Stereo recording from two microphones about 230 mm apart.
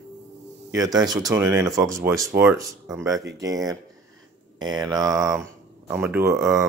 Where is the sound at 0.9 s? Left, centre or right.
Centre.